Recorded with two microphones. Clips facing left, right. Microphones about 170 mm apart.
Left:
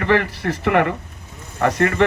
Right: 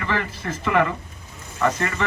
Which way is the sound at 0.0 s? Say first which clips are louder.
Left 8 dB; 65° left (ahead or behind).